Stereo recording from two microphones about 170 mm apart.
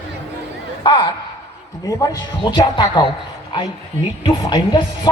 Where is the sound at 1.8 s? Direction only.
20° left (ahead or behind).